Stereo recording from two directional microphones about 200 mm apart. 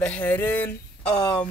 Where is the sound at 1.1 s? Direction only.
20° left (ahead or behind).